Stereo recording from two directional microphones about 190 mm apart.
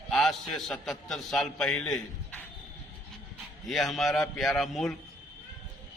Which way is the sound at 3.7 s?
Centre (ahead or behind).